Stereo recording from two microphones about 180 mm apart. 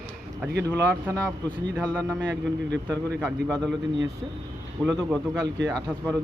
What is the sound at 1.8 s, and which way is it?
A man's voice, 5° left (ahead or behind).